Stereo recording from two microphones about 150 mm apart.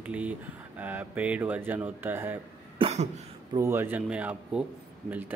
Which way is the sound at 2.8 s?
45° right (ahead or behind).